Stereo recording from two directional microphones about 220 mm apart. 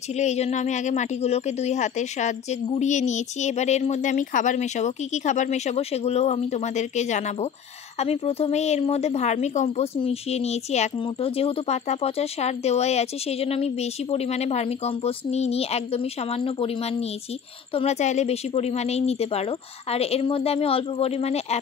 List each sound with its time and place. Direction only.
0.2 s a woman's voice: 30° left (ahead or behind)